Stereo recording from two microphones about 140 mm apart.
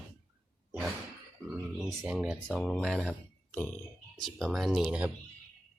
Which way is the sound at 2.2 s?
5° right (ahead or behind).